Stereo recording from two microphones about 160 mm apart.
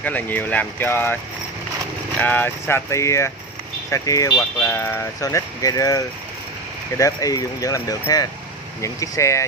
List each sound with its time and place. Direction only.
0.0 s speech: 10° left (ahead or behind)